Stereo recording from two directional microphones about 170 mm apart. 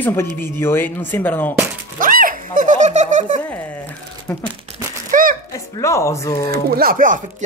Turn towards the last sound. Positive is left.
turn(degrees=-50)  # may be behind; listen again after turning